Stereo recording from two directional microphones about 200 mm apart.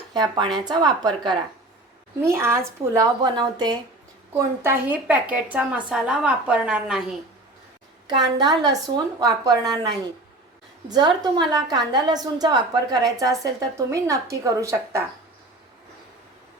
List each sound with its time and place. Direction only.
0.1 s a woman's voice: 20° right (ahead or behind); by 7.0 s 5° right (ahead or behind)
8.0 s a woman's voice: 20° right (ahead or behind)